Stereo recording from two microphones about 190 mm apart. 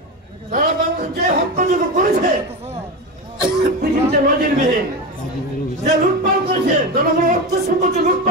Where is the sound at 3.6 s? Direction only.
50° right (ahead or behind).